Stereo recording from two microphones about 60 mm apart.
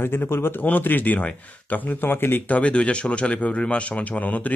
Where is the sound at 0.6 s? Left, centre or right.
Left.